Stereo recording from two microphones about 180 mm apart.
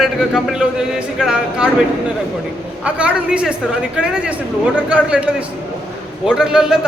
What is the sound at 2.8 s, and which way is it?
A man's voice, 5° right (ahead or behind).